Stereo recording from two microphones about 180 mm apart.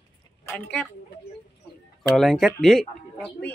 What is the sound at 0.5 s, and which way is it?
Speech, 5° left (ahead or behind).